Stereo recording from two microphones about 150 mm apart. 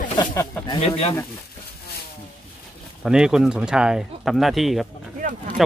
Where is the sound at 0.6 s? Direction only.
40° left (ahead or behind).